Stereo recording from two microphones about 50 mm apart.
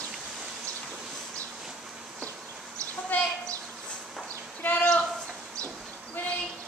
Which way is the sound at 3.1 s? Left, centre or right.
Left.